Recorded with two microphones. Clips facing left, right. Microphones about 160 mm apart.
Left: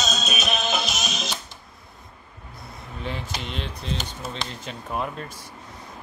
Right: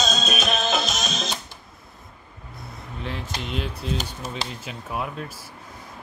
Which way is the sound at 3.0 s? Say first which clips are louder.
Even; centre (ahead or behind).